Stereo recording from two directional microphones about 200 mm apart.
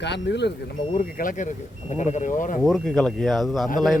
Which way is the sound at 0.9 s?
40° left (ahead or behind).